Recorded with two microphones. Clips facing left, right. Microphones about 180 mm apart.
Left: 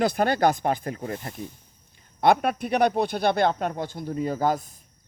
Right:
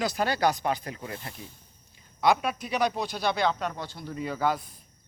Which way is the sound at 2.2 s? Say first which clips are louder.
Left 4 dB; 55° left (ahead or behind).